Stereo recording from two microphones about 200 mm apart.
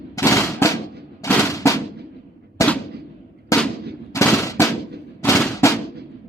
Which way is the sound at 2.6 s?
15° left (ahead or behind).